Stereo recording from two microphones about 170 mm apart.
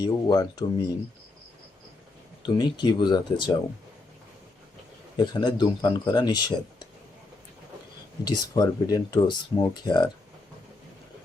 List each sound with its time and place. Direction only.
0.0 s speech: 25° left (ahead or behind)
2.4 s speech: 25° left (ahead or behind)
5.1 s speech: 25° left (ahead or behind)
8.2 s speech: 25° left (ahead or behind)